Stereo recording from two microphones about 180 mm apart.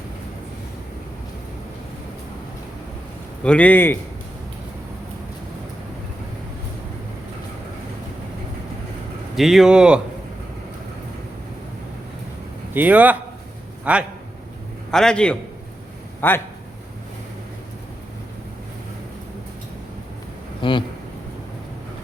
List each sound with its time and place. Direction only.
3.4 s a man's voice: 5° left (ahead or behind)
9.3 s speech: centre (ahead or behind)
12.7 s a man's voice: 10° right (ahead or behind)
14.8 s a man's voice: 5° left (ahead or behind)
20.6 s speech: 25° left (ahead or behind)